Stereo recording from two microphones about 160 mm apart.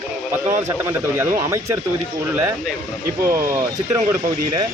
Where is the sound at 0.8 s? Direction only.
15° right (ahead or behind).